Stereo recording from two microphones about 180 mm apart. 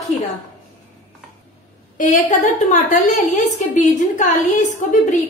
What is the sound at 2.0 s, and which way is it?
A woman's voice, 45° left (ahead or behind).